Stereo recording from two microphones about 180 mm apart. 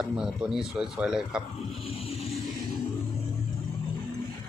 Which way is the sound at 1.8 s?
35° left (ahead or behind).